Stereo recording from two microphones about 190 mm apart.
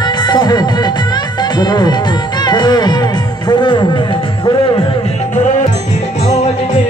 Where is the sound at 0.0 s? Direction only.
20° left (ahead or behind).